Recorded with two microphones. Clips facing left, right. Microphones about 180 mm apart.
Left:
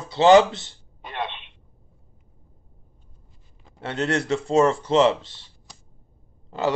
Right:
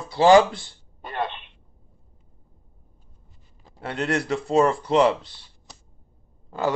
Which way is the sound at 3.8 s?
25° left (ahead or behind).